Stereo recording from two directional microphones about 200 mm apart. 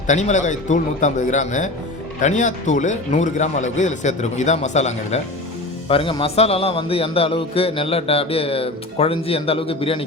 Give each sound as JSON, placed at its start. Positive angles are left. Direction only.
{"t": 0.1, "sound": "a man's voice", "side_deg": 40}